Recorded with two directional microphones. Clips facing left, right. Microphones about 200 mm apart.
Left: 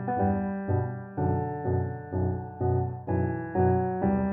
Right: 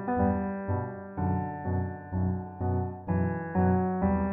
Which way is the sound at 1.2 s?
40° left (ahead or behind).